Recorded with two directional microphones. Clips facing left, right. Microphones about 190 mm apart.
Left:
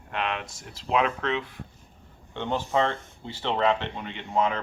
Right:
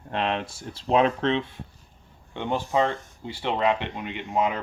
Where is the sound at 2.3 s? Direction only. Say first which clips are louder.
Right 1 dB; 15° right (ahead or behind).